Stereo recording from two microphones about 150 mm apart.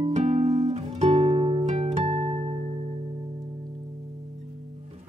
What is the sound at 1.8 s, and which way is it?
Harp, 45° right (ahead or behind).